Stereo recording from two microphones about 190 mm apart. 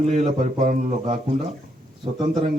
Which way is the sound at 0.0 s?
35° right (ahead or behind).